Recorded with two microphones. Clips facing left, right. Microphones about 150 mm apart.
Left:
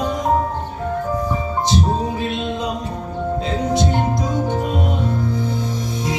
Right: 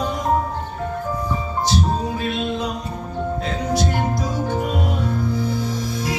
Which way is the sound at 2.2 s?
20° left (ahead or behind).